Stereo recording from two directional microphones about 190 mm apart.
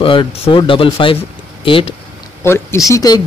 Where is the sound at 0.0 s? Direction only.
25° left (ahead or behind).